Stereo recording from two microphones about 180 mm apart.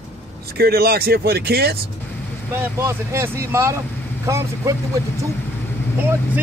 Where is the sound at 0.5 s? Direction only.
60° right (ahead or behind).